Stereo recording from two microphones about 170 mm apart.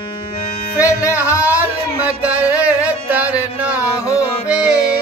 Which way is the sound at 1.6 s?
10° right (ahead or behind).